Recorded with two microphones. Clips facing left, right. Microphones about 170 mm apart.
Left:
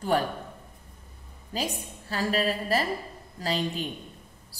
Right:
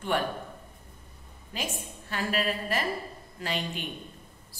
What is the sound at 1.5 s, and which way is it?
A woman's voice, 35° left (ahead or behind).